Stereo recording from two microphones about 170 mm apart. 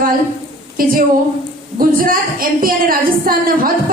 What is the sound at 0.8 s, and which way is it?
A woman's voice, 55° right (ahead or behind).